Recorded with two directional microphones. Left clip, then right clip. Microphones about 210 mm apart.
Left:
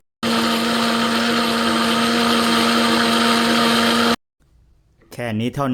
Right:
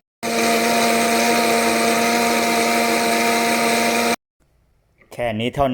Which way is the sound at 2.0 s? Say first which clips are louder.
Even; 35° left (ahead or behind).